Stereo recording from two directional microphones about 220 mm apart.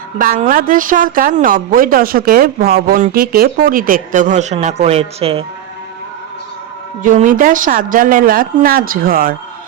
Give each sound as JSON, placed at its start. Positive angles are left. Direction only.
{"t": 0.2, "sound": "a woman's voice", "side_deg": -40}
{"t": 7.0, "sound": "a woman's voice", "side_deg": -35}